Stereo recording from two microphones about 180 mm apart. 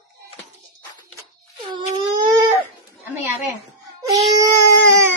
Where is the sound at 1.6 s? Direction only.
25° right (ahead or behind).